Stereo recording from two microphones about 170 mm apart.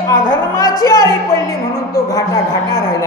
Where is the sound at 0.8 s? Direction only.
20° left (ahead or behind).